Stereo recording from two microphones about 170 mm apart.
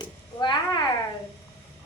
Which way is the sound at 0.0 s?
25° left (ahead or behind).